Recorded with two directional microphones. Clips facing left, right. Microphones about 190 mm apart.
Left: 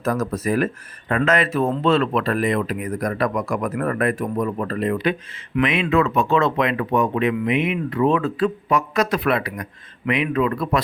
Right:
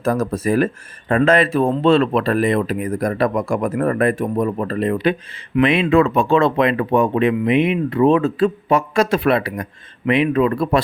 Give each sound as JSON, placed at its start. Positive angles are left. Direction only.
{"t": 0.0, "sound": "speech", "side_deg": -30}